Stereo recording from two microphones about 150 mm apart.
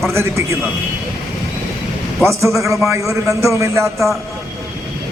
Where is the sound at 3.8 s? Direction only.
Centre (ahead or behind).